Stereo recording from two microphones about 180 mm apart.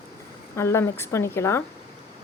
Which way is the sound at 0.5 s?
15° left (ahead or behind).